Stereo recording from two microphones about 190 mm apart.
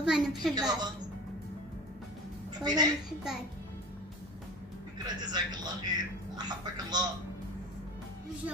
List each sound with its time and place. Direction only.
0.0 s a woman's voice: centre (ahead or behind)
0.6 s a man's voice: 20° right (ahead or behind)
2.6 s a man's voice: 20° right (ahead or behind)
4.9 s a man's voice: 20° right (ahead or behind)